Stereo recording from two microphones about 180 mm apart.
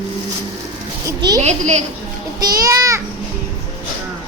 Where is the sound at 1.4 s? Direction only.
40° right (ahead or behind).